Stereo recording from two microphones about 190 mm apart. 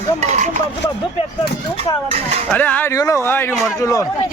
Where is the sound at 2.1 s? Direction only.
35° right (ahead or behind).